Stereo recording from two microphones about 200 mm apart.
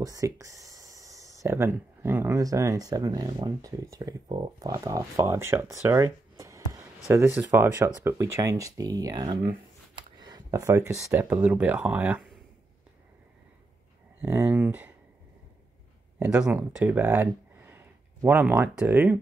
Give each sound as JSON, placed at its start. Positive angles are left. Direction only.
{"t": 0.0, "sound": "speech", "side_deg": -15}
{"t": 14.2, "sound": "speech", "side_deg": -10}
{"t": 16.2, "sound": "speech", "side_deg": -5}